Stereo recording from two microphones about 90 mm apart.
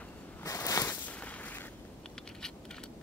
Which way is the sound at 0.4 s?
40° left (ahead or behind).